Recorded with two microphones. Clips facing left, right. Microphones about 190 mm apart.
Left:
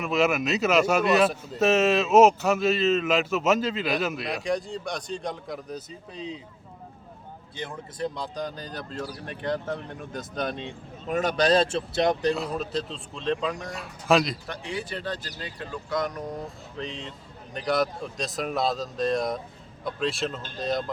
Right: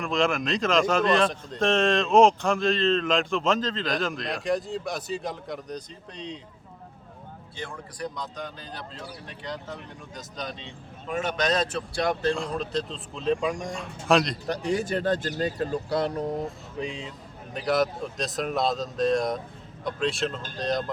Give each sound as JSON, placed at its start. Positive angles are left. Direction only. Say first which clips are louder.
{"t": 0.0, "sound": "a man's voice", "louder": "left 1 dB", "side_deg": 5}
{"t": 7.5, "sound": "speech", "louder": "left 2 dB", "side_deg": 20}
{"t": 11.1, "sound": "speech", "louder": "left 4 dB", "side_deg": 40}
{"t": 12.4, "sound": "a man's voice", "louder": "even", "side_deg": 5}
{"t": 13.7, "sound": "a man's voice", "louder": "left 1 dB", "side_deg": 5}
{"t": 14.4, "sound": "speech", "louder": "right 7 dB", "side_deg": -40}
{"t": 16.7, "sound": "a man's voice", "louder": "even", "side_deg": -10}